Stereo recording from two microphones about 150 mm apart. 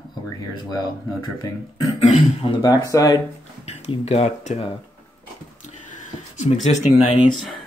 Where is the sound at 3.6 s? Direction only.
45° left (ahead or behind).